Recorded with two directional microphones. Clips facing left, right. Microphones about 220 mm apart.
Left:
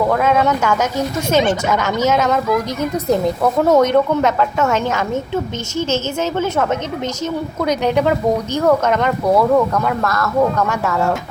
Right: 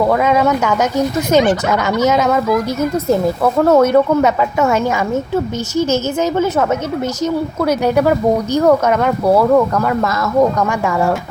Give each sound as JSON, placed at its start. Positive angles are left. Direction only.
{"t": 0.1, "sound": "speech", "side_deg": -10}
{"t": 10.0, "sound": "speech", "side_deg": -20}
{"t": 10.6, "sound": "speech", "side_deg": -10}